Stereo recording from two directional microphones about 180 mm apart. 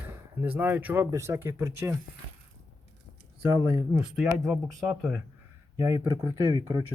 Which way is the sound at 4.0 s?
5° right (ahead or behind).